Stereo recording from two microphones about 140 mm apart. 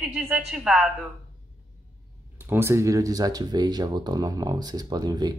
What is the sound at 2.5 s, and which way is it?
Speech, 20° right (ahead or behind).